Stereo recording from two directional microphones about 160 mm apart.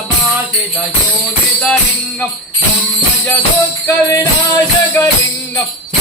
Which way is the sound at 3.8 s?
20° left (ahead or behind).